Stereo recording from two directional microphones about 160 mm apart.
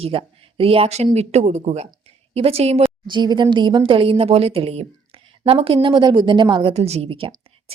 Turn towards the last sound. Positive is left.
turn(degrees=-35)  # may be behind; listen again after turning